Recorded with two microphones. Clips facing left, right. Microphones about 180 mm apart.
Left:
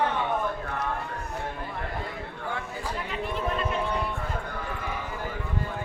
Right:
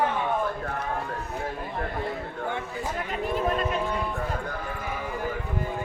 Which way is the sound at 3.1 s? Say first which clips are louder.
Right 4 dB; 45° right (ahead or behind).